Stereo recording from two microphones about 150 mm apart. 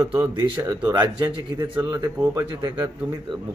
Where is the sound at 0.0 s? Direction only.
15° right (ahead or behind).